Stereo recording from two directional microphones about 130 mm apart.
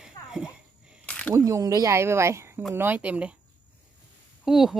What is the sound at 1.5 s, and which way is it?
A woman's voice, 25° right (ahead or behind).